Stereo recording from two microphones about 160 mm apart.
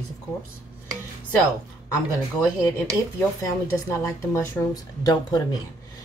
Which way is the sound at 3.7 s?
15° left (ahead or behind).